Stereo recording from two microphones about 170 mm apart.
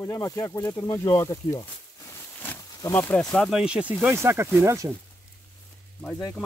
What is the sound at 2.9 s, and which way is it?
Speech, 10° left (ahead or behind).